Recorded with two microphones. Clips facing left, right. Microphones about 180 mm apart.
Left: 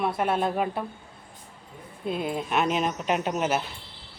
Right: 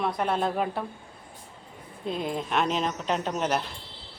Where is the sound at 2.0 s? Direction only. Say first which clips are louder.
Left 1 dB; 5° left (ahead or behind).